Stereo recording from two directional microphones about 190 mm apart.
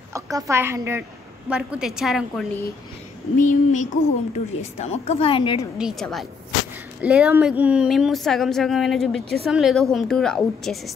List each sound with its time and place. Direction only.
0.1 s a woman's voice: 15° right (ahead or behind)
3.3 s a woman's voice: 40° left (ahead or behind); by 5.7 s 25° left (ahead or behind)
5.8 s speech: centre (ahead or behind)